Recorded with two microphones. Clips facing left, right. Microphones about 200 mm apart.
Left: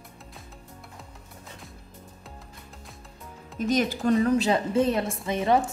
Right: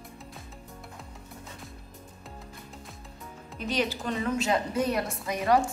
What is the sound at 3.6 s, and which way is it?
A woman's voice, 45° left (ahead or behind).